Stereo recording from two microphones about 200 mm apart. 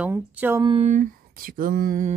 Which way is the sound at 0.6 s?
25° right (ahead or behind).